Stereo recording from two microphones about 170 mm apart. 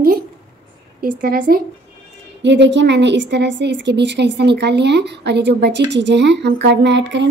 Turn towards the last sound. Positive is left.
turn(degrees=-90)